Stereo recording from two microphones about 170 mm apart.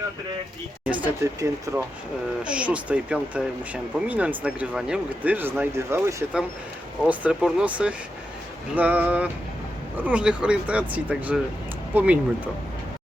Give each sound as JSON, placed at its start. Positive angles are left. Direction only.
{"t": 1.0, "sound": "speech", "side_deg": -20}
{"t": 2.4, "sound": "speech", "side_deg": -5}